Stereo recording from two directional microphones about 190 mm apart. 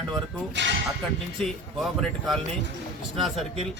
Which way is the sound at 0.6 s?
65° right (ahead or behind).